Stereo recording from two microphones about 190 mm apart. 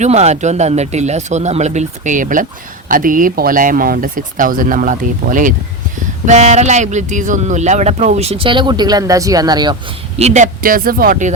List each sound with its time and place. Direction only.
0.0 s speech: 35° right (ahead or behind)
10.2 s speech: 35° right (ahead or behind)